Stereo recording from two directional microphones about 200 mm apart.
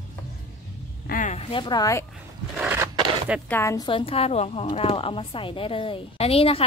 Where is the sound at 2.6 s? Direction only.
10° right (ahead or behind).